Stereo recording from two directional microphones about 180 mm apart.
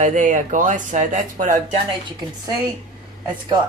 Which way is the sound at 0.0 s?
40° right (ahead or behind).